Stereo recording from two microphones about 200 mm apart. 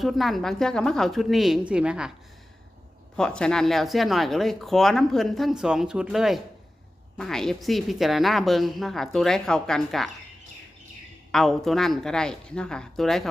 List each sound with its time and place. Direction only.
0.0 s speech: centre (ahead or behind)
3.2 s speech: 5° left (ahead or behind)
11.3 s speech: centre (ahead or behind)